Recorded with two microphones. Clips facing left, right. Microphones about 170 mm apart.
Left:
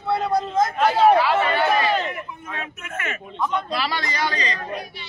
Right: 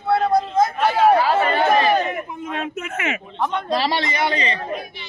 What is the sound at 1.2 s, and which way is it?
Speech, 45° right (ahead or behind).